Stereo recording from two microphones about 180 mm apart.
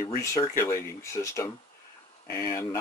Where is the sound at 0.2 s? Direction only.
15° left (ahead or behind).